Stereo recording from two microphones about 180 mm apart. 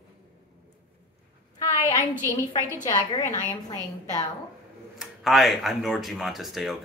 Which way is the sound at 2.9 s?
20° left (ahead or behind).